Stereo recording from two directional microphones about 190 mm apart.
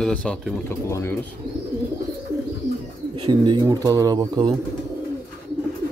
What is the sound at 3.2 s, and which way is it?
Speech, 25° right (ahead or behind).